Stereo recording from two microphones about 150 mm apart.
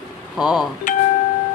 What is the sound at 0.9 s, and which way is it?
Speech, 60° left (ahead or behind).